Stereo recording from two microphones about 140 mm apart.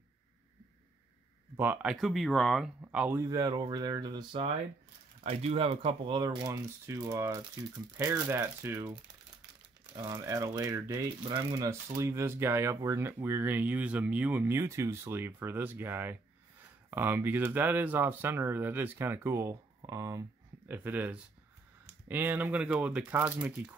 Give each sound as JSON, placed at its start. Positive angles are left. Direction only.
{"t": 1.6, "sound": "speech", "side_deg": -10}
{"t": 2.8, "sound": "speech", "side_deg": -10}
{"t": 3.2, "sound": "speech", "side_deg": -25}
{"t": 5.2, "sound": "speech", "side_deg": -45}
{"t": 9.9, "sound": "speech", "side_deg": -20}